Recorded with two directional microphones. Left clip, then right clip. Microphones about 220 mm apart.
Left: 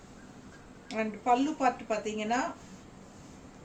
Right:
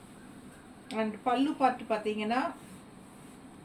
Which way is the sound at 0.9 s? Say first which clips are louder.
Left 3 dB; 15° left (ahead or behind).